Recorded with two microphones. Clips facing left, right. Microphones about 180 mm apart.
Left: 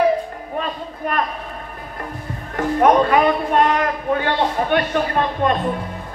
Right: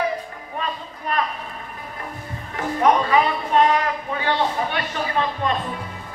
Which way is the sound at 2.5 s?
50° left (ahead or behind).